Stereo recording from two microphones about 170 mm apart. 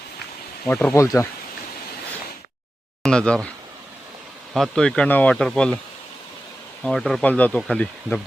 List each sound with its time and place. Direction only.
0.7 s speech: 10° left (ahead or behind)
3.0 s speech: 5° left (ahead or behind)
4.5 s speech: 5° left (ahead or behind)
6.8 s speech: centre (ahead or behind)